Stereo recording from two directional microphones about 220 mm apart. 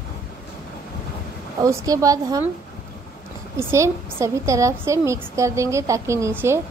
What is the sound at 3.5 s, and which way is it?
A woman's voice, 10° right (ahead or behind).